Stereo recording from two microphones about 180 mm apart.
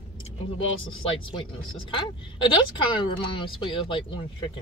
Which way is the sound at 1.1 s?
30° left (ahead or behind).